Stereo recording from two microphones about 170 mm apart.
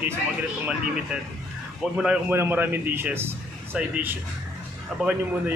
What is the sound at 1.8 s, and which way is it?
A man's voice, 5° right (ahead or behind).